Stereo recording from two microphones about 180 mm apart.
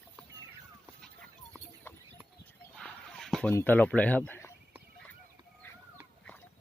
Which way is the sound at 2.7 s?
5° left (ahead or behind).